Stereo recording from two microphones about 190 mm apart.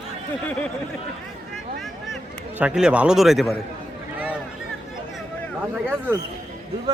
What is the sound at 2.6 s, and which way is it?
Speech, 5° right (ahead or behind).